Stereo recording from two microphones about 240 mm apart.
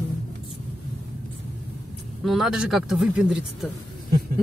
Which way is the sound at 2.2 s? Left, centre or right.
Centre.